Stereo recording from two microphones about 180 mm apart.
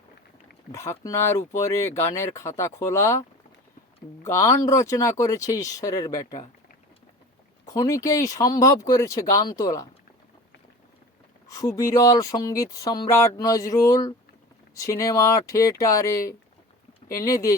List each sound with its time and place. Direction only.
0.7 s speech: 15° left (ahead or behind)
4.2 s speech: 15° left (ahead or behind)
7.6 s speech: 20° left (ahead or behind)
11.4 s speech: 20° left (ahead or behind)